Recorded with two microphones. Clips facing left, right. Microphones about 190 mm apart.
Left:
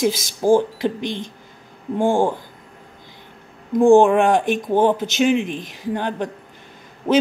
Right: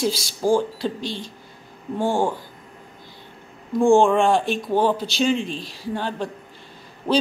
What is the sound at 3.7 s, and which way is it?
Speech, 20° left (ahead or behind).